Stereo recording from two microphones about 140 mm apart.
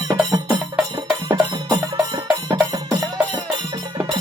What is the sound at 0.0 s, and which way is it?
Music, 25° right (ahead or behind).